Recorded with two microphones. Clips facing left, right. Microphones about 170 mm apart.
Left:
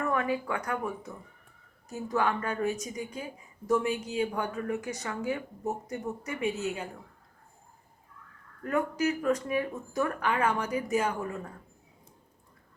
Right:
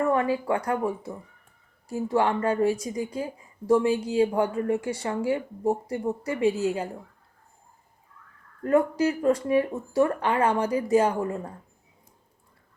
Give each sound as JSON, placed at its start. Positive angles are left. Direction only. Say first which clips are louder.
{"t": 0.1, "sound": "speech", "louder": "right 6 dB", "side_deg": -30}
{"t": 8.6, "sound": "speech", "louder": "right 6 dB", "side_deg": -30}